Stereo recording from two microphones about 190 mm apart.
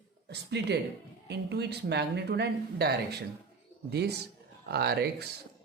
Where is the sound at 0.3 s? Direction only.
60° right (ahead or behind).